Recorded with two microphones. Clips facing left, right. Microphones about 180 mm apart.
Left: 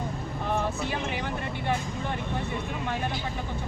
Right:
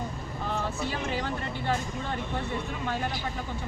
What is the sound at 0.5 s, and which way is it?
Vehicle, 20° left (ahead or behind).